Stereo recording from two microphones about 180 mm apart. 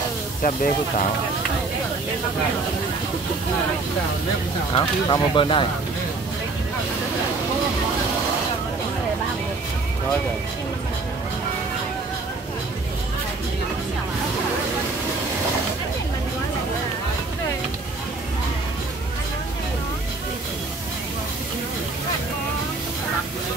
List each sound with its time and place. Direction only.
0.4 s speech: 50° left (ahead or behind)
4.7 s speech: 25° left (ahead or behind)